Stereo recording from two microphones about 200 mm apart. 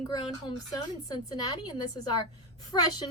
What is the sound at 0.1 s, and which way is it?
A woman's voice, 20° left (ahead or behind).